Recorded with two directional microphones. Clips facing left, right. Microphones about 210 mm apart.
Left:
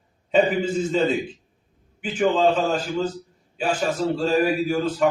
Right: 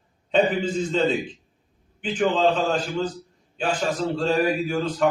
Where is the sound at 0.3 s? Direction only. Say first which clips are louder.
Left 1 dB; 5° left (ahead or behind).